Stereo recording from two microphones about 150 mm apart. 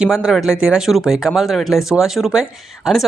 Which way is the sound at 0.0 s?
5° right (ahead or behind).